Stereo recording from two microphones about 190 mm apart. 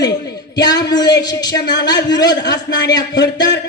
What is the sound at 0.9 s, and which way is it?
Speech, 20° left (ahead or behind).